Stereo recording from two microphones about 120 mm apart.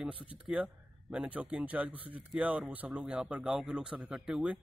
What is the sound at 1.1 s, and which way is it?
Speech, 10° right (ahead or behind).